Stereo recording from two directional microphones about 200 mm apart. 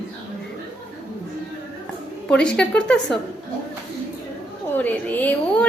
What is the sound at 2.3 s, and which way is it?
Speech, 5° left (ahead or behind).